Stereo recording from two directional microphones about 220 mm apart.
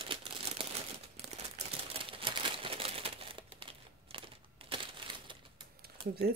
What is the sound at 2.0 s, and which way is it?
Crumpling, 25° right (ahead or behind).